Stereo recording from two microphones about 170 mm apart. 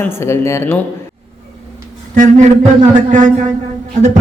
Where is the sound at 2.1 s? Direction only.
50° right (ahead or behind).